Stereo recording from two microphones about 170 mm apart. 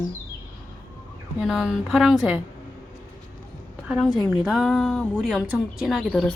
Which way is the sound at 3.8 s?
5° right (ahead or behind).